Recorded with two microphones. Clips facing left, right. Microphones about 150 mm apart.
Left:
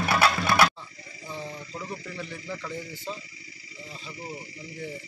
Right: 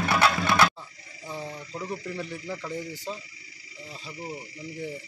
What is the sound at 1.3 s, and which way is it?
Radio, 10° right (ahead or behind).